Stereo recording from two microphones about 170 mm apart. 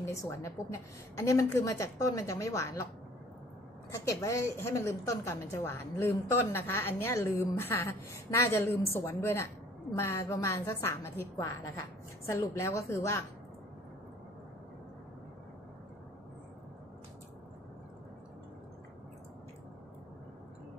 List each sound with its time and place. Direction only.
0.0 s a woman's voice: 15° left (ahead or behind)
3.9 s a woman's voice: 20° left (ahead or behind)